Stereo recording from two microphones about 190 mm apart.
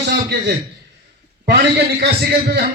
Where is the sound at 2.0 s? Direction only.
55° right (ahead or behind).